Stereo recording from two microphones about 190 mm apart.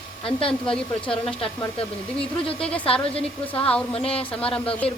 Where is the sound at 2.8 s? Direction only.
30° left (ahead or behind).